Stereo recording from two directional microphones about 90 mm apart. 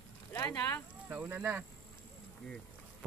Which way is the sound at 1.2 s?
20° right (ahead or behind).